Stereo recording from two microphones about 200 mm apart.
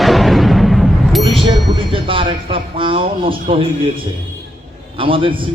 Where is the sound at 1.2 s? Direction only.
25° right (ahead or behind).